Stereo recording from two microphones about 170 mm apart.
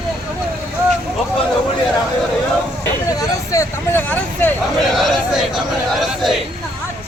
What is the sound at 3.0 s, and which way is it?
Hubbub, 20° left (ahead or behind).